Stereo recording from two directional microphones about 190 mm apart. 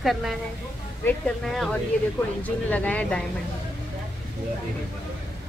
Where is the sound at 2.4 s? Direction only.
5° left (ahead or behind).